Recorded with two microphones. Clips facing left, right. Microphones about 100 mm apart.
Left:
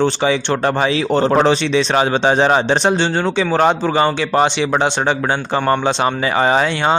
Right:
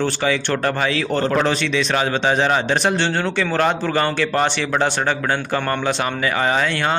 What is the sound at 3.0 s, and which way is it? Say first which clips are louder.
Speech: left 3 dB; 15° left (ahead or behind).